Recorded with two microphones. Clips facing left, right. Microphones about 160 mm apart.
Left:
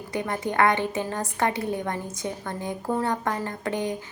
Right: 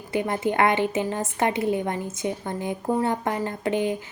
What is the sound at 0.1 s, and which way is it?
A woman's voice, 25° right (ahead or behind).